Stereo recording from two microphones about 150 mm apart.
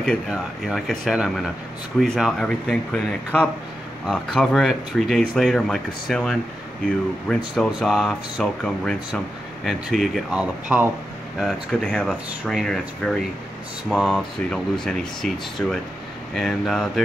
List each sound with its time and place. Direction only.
0.3 s speech: centre (ahead or behind)
11.3 s speech: 5° left (ahead or behind)